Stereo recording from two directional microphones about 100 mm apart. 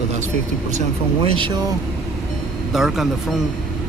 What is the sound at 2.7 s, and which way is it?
Speech, centre (ahead or behind).